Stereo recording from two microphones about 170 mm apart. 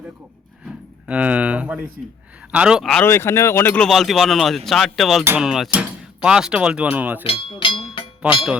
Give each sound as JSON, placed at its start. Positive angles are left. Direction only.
{"t": 1.0, "sound": "speech", "side_deg": -10}
{"t": 3.0, "sound": "speech", "side_deg": 15}
{"t": 7.3, "sound": "music", "side_deg": 30}
{"t": 8.2, "sound": "speech", "side_deg": -5}